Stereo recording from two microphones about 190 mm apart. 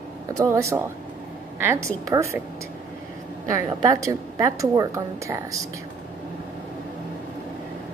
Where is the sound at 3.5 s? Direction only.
20° right (ahead or behind).